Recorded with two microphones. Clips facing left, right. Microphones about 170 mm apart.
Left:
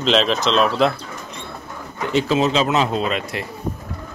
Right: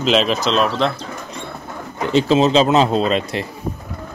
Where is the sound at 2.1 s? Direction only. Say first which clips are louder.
Right 4 dB; 30° right (ahead or behind).